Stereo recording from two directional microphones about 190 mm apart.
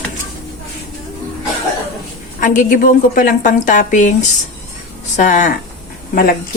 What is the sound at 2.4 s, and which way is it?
A woman's voice, 40° left (ahead or behind).